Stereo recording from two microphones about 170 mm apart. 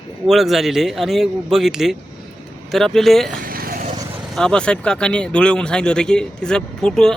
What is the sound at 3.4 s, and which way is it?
Vehicle, 60° right (ahead or behind).